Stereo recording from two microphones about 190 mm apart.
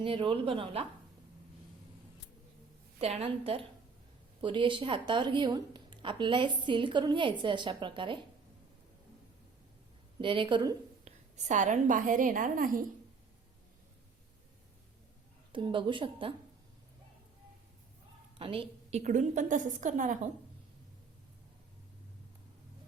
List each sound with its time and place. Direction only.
0.0 s a woman's voice: 25° right (ahead or behind)
3.0 s a woman's voice: 35° right (ahead or behind)
10.2 s a woman's voice: 25° right (ahead or behind)
11.0 s a woman's voice: 40° right (ahead or behind)
15.5 s a woman's voice: 25° right (ahead or behind)
18.3 s a woman's voice: 25° right (ahead or behind)